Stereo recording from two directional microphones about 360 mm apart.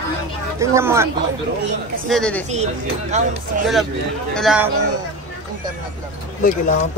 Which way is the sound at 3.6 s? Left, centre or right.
Centre.